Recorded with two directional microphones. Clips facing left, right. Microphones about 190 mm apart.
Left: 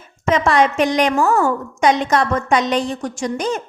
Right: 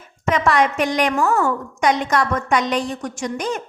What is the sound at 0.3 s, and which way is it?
A woman's voice, 25° left (ahead or behind).